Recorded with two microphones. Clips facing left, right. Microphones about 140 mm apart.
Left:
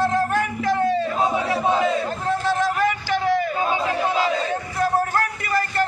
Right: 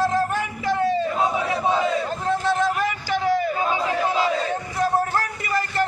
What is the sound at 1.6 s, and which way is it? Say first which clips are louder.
Battle cry: left 1 dB; centre (ahead or behind).